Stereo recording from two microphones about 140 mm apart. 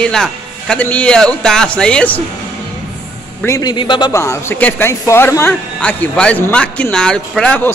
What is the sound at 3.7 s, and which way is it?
A man's voice, 35° left (ahead or behind).